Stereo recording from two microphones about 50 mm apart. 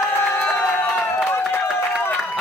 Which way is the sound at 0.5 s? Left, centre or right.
Left.